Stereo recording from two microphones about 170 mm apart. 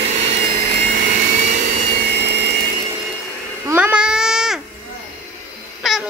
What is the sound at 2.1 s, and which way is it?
Vacuum cleaner, 75° right (ahead or behind).